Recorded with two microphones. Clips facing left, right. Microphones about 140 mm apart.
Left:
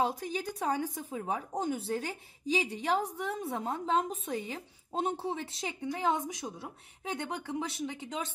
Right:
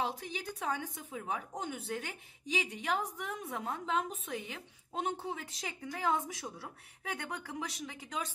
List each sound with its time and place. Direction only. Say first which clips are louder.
0.0 s speech: left 5 dB; 40° left (ahead or behind); by 8.3 s 25° left (ahead or behind)